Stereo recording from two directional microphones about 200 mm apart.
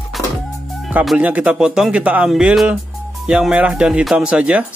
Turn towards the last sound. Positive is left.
turn(degrees=-5)  # may be behind; listen again after turning